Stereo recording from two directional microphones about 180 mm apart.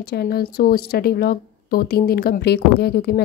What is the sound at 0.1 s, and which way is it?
A woman's voice, 55° left (ahead or behind).